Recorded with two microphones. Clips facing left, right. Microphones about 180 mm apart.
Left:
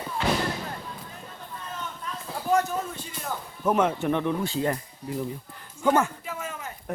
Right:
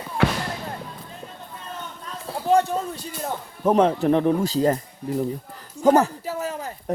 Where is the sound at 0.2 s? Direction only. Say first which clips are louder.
Right 4 dB; 70° right (ahead or behind).